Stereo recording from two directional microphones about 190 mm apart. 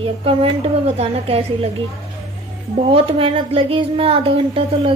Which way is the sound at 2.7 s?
30° right (ahead or behind).